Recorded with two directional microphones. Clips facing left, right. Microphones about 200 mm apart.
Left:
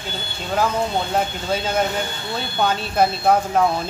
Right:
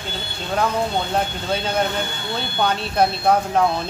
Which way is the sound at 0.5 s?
5° left (ahead or behind).